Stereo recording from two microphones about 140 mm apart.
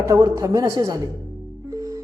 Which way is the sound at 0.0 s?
20° right (ahead or behind).